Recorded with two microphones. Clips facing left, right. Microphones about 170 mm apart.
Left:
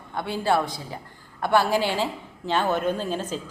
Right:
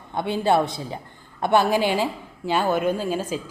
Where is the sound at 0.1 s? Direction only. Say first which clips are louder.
Right 3 dB; 20° right (ahead or behind).